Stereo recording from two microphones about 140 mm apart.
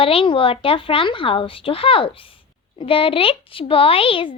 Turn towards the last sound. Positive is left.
turn(degrees=40)  # may be behind; listen again after turning